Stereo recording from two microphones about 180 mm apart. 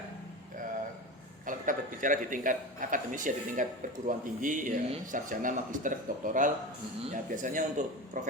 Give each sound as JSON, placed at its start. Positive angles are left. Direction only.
{"t": 1.5, "sound": "a man's voice", "side_deg": -45}